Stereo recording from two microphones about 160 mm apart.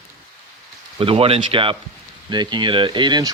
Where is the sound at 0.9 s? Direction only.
35° right (ahead or behind).